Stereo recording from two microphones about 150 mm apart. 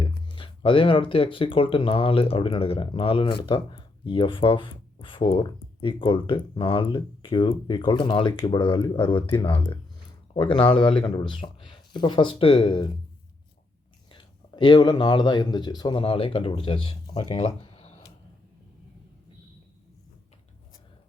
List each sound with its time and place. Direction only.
0.0 s speech: 35° left (ahead or behind)
14.1 s speech: 30° left (ahead or behind)
17.3 s a sound: 40° left (ahead or behind)